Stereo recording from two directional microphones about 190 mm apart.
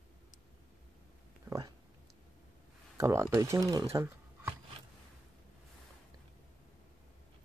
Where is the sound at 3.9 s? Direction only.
10° right (ahead or behind).